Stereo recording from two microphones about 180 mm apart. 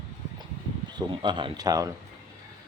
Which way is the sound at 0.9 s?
25° right (ahead or behind).